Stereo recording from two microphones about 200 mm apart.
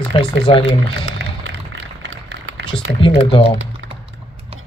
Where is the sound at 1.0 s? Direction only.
65° right (ahead or behind).